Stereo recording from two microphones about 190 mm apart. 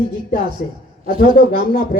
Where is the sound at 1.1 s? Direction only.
45° left (ahead or behind).